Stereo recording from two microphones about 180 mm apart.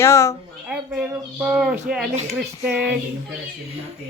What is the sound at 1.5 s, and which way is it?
A woman's voice, 5° right (ahead or behind).